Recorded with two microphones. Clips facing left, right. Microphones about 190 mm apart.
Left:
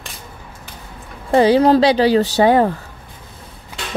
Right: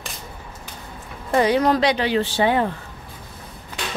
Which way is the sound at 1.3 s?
30° left (ahead or behind).